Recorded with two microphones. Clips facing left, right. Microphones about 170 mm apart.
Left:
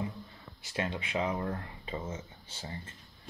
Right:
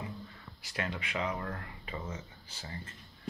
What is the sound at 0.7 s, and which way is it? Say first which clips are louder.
Speech: left 3 dB; 25° left (ahead or behind).